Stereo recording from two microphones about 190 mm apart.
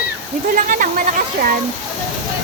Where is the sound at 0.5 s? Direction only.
45° right (ahead or behind).